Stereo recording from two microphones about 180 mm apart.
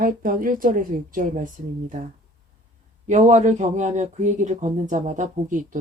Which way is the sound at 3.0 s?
40° right (ahead or behind).